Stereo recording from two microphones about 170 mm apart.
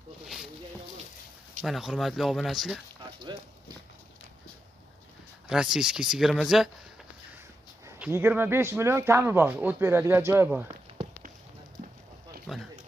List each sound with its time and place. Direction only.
1.6 s speech: centre (ahead or behind)
5.5 s speech: 5° right (ahead or behind)
7.8 s speech: 15° right (ahead or behind)
12.5 s speech: centre (ahead or behind)